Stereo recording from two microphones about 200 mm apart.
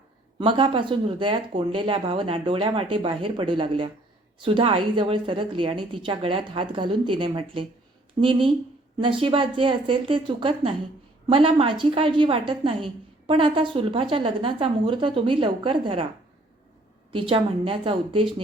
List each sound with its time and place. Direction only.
0.3 s a woman's voice: 25° right (ahead or behind)
17.1 s a woman's voice: 25° right (ahead or behind)